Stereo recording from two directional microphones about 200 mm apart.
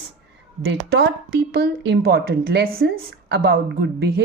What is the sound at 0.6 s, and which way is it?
A woman's voice, 60° right (ahead or behind).